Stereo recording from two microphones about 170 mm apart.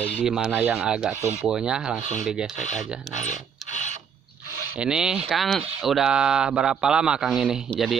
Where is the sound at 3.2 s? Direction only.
45° left (ahead or behind).